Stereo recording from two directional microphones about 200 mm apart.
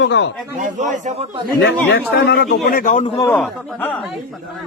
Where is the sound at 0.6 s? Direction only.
35° right (ahead or behind).